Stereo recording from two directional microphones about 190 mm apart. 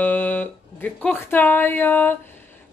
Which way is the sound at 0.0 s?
10° left (ahead or behind).